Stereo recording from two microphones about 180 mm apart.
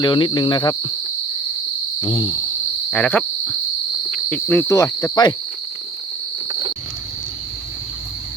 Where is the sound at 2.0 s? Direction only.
25° left (ahead or behind).